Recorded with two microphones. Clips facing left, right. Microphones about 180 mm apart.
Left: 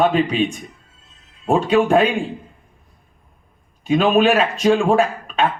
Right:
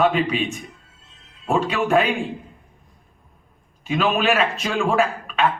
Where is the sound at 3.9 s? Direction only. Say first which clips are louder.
Left 5 dB; 30° left (ahead or behind).